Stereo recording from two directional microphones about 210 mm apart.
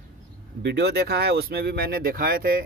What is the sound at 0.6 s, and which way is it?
Speech, 50° right (ahead or behind).